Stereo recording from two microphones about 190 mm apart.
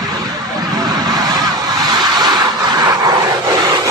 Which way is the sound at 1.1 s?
20° right (ahead or behind).